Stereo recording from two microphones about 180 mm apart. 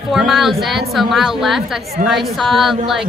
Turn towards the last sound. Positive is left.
turn(degrees=0)  # may be behind; listen again after turning